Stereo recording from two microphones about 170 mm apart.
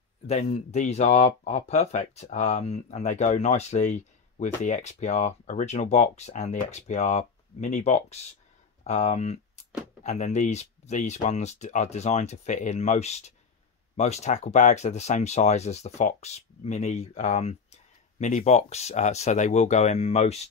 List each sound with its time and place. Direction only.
0.3 s speech: 40° left (ahead or behind)